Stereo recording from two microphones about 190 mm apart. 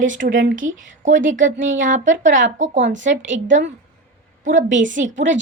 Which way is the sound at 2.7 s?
75° right (ahead or behind).